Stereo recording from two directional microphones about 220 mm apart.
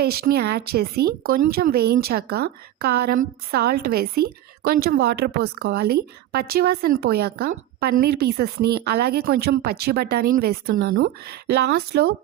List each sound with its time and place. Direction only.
0.0 s speech: 45° right (ahead or behind)